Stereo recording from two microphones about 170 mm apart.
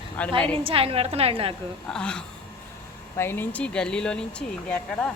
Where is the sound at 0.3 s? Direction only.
5° left (ahead or behind).